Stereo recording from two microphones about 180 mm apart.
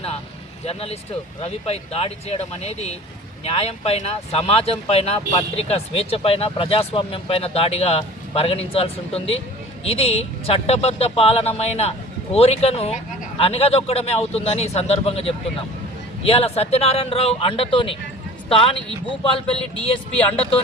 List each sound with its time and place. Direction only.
0.6 s speech: 35° left (ahead or behind)
20.3 s speech: 30° left (ahead or behind)